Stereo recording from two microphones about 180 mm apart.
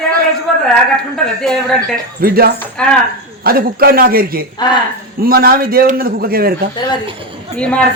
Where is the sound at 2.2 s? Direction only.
55° right (ahead or behind).